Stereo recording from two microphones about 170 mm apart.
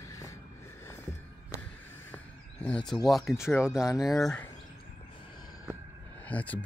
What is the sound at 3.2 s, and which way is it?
Speech, 15° left (ahead or behind).